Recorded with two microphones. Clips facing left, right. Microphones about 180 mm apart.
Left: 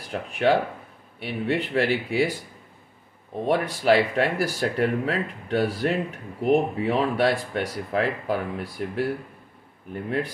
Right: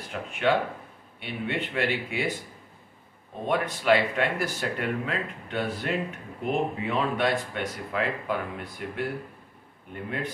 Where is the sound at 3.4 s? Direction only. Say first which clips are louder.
Left 3 dB; 35° left (ahead or behind).